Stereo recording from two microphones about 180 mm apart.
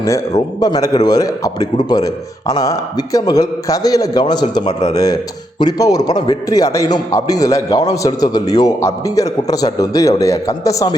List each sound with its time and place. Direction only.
0.0 s a man's voice: 20° left (ahead or behind)